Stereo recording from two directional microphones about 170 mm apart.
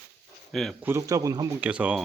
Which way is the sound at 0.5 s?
Centre (ahead or behind).